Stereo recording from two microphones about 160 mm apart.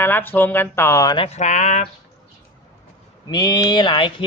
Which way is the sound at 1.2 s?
45° left (ahead or behind).